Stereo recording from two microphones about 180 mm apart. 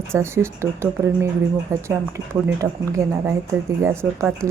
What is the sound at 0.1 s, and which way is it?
Speech, 15° right (ahead or behind).